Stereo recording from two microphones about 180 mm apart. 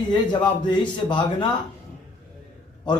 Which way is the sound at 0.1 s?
25° left (ahead or behind).